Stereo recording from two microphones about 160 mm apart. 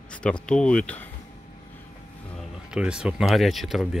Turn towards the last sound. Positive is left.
turn(degrees=0)  # may be behind; listen again after turning